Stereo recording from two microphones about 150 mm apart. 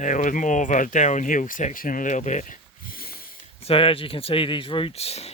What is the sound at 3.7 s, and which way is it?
Speech, 40° left (ahead or behind).